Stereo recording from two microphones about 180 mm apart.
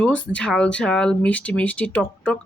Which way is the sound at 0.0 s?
5° left (ahead or behind).